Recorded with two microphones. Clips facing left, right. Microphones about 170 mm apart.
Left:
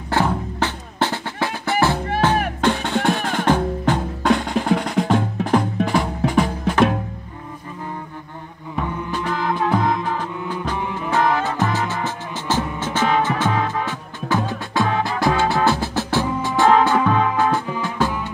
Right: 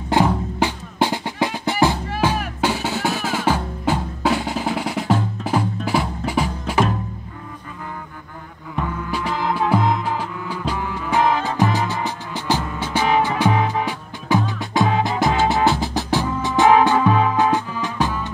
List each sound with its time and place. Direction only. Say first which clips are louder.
0.1 s music: right 2 dB; 15° right (ahead or behind)
2.6 s drum: even; 5° right (ahead or behind)
5.9 s music: left 2 dB; 5° right (ahead or behind)
9.1 s music: even; 10° right (ahead or behind)
10.8 s music: left 1 dB; 20° left (ahead or behind)
11.1 s music: right 1 dB; 15° right (ahead or behind)